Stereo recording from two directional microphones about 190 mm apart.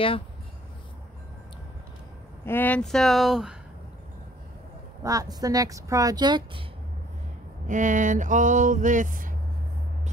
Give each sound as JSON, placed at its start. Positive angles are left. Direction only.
{"t": 2.4, "sound": "speech", "side_deg": 10}
{"t": 5.0, "sound": "speech", "side_deg": -20}
{"t": 7.6, "sound": "vehicle", "side_deg": -40}